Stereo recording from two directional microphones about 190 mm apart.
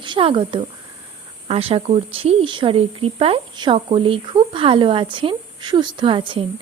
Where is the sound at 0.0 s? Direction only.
25° right (ahead or behind).